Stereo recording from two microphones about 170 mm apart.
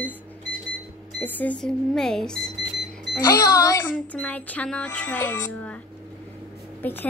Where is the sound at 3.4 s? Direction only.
20° left (ahead or behind).